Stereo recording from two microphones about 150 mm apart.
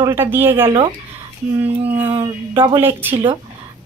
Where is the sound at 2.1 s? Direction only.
35° right (ahead or behind).